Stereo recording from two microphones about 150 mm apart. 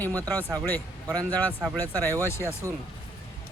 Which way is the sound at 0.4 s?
25° right (ahead or behind).